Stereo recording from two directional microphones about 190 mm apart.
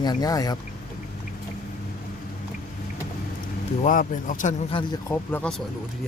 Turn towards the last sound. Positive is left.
turn(degrees=5)  # may be behind; listen again after turning